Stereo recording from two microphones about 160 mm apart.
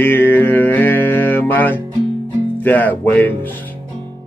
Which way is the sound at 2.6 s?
10° left (ahead or behind).